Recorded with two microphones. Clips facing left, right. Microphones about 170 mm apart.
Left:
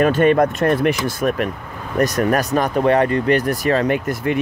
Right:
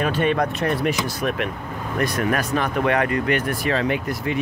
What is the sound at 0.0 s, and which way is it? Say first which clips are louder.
Speech: left 7 dB; 50° left (ahead or behind).